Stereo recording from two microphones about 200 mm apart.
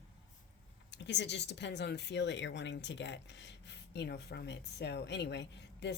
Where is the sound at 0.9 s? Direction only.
60° left (ahead or behind).